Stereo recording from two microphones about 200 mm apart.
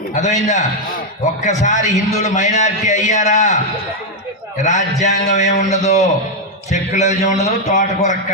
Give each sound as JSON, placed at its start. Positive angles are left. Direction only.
{"t": 0.1, "sound": "a man's voice", "side_deg": 35}